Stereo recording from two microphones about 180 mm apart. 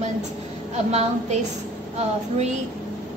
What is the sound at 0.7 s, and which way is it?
Speech, 35° right (ahead or behind).